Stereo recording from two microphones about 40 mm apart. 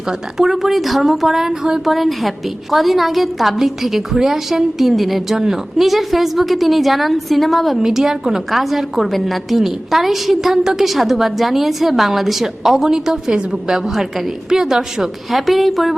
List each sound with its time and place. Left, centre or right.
0.3 s a woman's voice: centre
1.8 s a woman's voice: centre
7.8 s a woman's voice: centre
15.3 s a woman's voice: centre